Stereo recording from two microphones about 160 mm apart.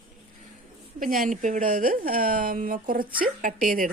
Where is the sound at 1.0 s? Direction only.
60° right (ahead or behind).